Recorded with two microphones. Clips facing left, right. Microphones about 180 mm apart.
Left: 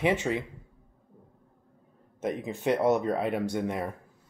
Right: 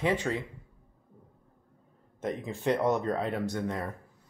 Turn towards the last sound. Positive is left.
turn(degrees=15)  # may be behind; listen again after turning